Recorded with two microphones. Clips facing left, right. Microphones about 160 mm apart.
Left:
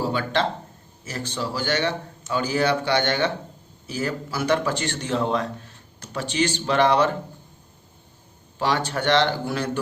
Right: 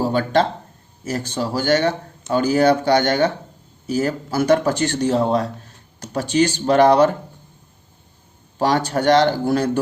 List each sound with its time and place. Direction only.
0.0 s a man's voice: 45° right (ahead or behind)
8.5 s a man's voice: 40° right (ahead or behind)